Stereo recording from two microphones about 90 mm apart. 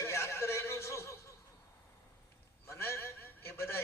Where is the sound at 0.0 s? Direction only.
30° left (ahead or behind).